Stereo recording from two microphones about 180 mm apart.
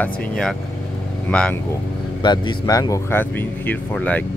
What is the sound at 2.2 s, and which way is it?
Speech, 25° left (ahead or behind).